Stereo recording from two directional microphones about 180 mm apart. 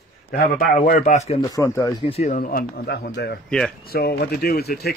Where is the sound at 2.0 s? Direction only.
35° left (ahead or behind).